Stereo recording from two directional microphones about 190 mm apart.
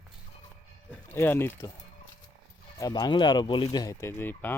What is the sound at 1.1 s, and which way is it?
Speech, 10° left (ahead or behind).